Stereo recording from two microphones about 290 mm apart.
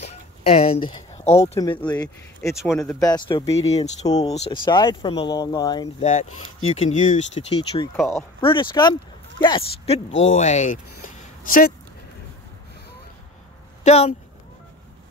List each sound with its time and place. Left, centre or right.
0.0 s a sound: left
1.8 s speech: centre
2.8 s speech: centre
7.9 s speech: centre
8.4 s speech: centre
13.8 s speech: left